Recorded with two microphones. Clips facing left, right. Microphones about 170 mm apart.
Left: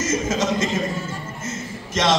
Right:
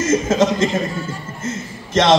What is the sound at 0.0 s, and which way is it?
A man's voice, 55° right (ahead or behind).